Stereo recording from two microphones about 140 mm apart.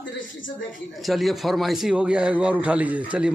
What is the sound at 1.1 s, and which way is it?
A man's voice, centre (ahead or behind).